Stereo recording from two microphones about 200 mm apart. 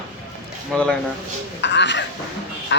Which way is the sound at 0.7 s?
5° left (ahead or behind).